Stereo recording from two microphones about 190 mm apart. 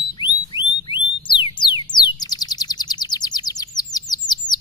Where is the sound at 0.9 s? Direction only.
25° left (ahead or behind).